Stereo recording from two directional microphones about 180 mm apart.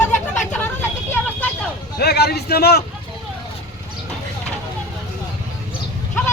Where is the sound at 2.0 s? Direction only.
65° left (ahead or behind).